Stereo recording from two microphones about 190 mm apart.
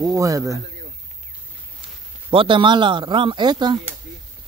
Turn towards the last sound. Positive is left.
turn(degrees=-25)  # may be behind; listen again after turning